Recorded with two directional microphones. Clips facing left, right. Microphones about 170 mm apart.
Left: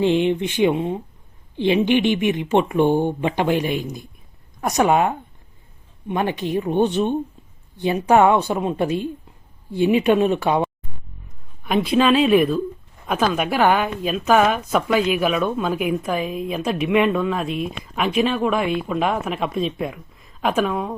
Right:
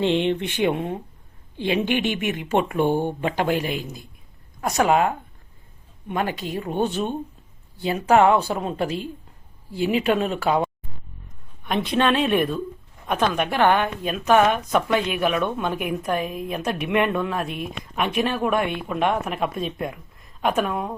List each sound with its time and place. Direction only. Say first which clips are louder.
0.0 s speech: left 3 dB; 15° left (ahead or behind)
7.8 s speech: left 2 dB; 20° left (ahead or behind)
11.6 s a woman's voice: left 4 dB; 10° left (ahead or behind)